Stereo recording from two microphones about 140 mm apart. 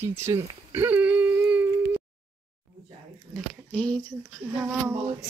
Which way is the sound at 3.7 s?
5° left (ahead or behind).